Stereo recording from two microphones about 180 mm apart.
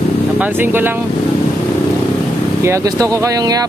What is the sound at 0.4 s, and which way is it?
Speech, 10° right (ahead or behind).